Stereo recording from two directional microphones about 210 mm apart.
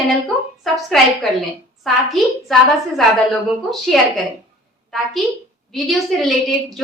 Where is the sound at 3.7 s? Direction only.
Centre (ahead or behind).